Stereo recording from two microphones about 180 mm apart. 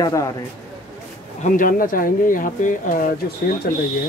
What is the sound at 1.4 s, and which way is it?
Speech, 50° left (ahead or behind).